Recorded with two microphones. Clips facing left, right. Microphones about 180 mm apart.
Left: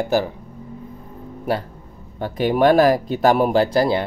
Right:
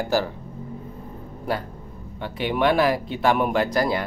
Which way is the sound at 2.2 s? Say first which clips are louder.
Left 6 dB; 40° left (ahead or behind).